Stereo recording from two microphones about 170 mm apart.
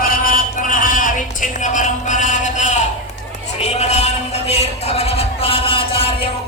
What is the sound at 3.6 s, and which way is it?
Music, 40° left (ahead or behind).